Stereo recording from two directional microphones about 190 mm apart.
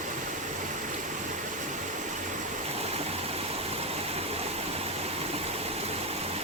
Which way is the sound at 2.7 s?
35° right (ahead or behind).